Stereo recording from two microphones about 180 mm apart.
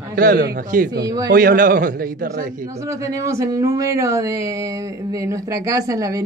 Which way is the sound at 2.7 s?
15° right (ahead or behind).